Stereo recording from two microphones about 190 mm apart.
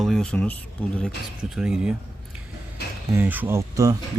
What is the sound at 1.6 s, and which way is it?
Speech, 5° right (ahead or behind).